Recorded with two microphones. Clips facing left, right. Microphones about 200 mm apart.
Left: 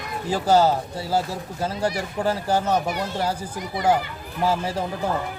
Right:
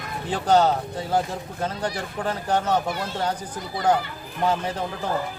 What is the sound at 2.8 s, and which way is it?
Speech, 20° left (ahead or behind).